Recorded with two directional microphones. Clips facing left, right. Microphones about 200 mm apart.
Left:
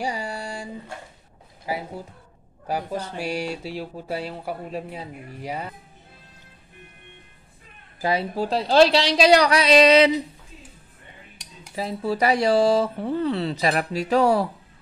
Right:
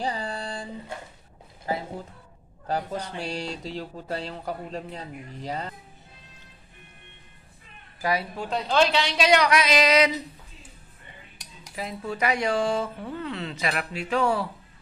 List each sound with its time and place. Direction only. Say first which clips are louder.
0.0 s speech: left 1 dB; 10° left (ahead or behind)
1.7 s speech: even; 10° left (ahead or behind)
8.0 s speech: left 4 dB; 25° left (ahead or behind)
11.6 s speech: left 6 dB; 30° left (ahead or behind)